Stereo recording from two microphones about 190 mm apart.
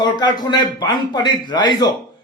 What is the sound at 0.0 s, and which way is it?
A man's voice, 20° left (ahead or behind).